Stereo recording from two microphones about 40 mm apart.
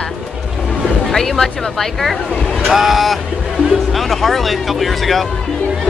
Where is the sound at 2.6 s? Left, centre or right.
Centre.